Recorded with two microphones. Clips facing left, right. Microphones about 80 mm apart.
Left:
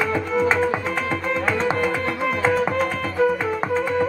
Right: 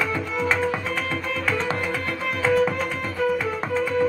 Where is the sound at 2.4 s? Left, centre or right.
Left.